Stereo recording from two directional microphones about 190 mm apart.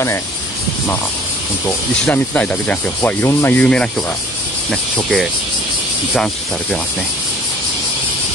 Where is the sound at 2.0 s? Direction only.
5° left (ahead or behind).